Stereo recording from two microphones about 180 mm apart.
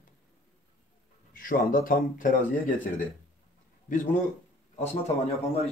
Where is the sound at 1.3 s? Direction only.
50° left (ahead or behind).